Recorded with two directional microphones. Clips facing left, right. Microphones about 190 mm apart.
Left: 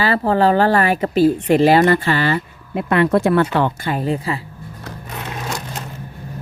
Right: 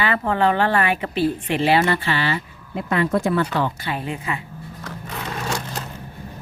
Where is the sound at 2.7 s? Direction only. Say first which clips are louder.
Left 5 dB; 65° left (ahead or behind).